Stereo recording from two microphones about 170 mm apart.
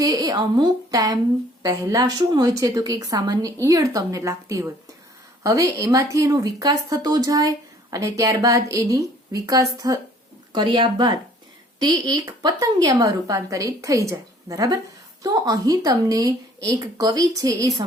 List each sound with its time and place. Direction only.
0.0 s speech: 20° right (ahead or behind)